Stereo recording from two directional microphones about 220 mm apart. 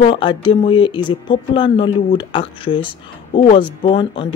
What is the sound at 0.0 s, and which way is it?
Speech, 20° left (ahead or behind).